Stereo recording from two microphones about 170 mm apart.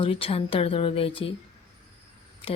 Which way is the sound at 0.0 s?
35° left (ahead or behind).